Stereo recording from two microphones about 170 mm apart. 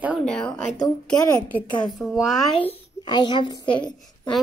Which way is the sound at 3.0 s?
25° left (ahead or behind).